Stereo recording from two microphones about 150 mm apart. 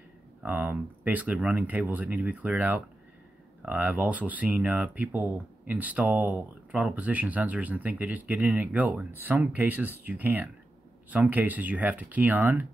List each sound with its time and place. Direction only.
0.4 s speech: 10° right (ahead or behind)